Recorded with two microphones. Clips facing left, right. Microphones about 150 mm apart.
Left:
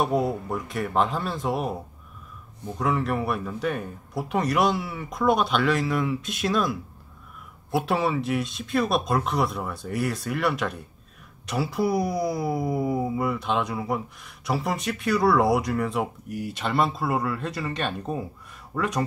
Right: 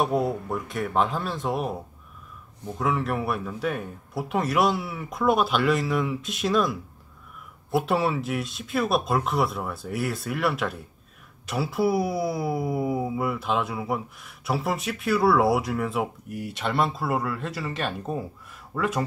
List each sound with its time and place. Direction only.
0.0 s speech: centre (ahead or behind)
2.8 s speech: centre (ahead or behind)